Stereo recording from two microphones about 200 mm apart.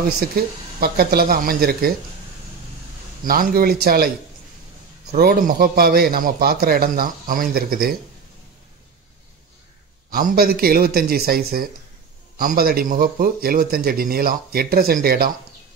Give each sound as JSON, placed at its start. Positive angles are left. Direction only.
{"t": 0.3, "sound": "a man's voice", "side_deg": -50}
{"t": 3.3, "sound": "a man's voice", "side_deg": -45}
{"t": 5.1, "sound": "a man's voice", "side_deg": -45}
{"t": 10.1, "sound": "a man's voice", "side_deg": -45}